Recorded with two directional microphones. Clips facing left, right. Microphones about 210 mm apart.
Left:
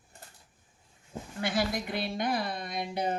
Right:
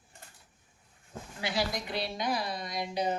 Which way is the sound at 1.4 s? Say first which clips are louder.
Left 3 dB; 50° left (ahead or behind).